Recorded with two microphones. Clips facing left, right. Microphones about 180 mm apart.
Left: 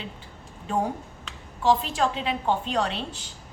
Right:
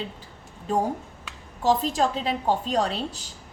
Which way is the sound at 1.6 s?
40° right (ahead or behind).